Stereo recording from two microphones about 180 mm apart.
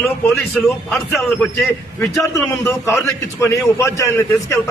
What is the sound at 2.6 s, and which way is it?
A man's voice, 15° left (ahead or behind).